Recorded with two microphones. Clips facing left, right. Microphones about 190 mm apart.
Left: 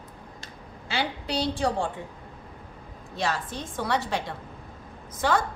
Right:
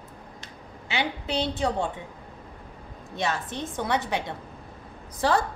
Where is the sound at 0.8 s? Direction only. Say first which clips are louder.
Right 1 dB; 20° right (ahead or behind).